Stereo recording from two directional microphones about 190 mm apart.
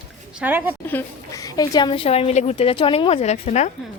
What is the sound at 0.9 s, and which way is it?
A woman's voice, 15° left (ahead or behind).